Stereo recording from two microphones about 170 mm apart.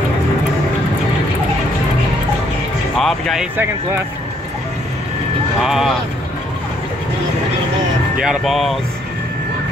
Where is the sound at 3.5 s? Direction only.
10° right (ahead or behind).